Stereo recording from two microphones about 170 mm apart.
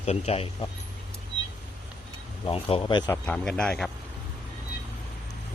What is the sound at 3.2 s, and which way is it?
Speech, 5° left (ahead or behind).